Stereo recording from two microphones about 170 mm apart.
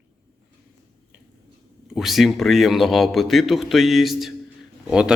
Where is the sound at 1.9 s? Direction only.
Centre (ahead or behind).